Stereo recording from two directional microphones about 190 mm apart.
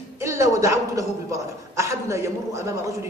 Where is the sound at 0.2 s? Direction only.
15° right (ahead or behind).